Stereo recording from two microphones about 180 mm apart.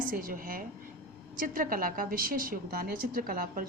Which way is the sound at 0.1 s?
50° right (ahead or behind).